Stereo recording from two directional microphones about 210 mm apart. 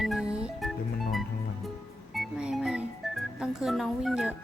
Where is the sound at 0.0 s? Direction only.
Centre (ahead or behind).